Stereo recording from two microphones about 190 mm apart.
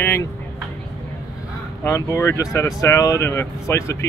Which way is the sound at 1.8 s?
15° left (ahead or behind).